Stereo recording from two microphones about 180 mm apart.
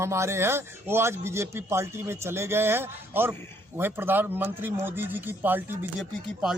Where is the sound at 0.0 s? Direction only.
15° right (ahead or behind).